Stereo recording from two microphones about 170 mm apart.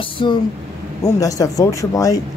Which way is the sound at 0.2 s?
30° left (ahead or behind).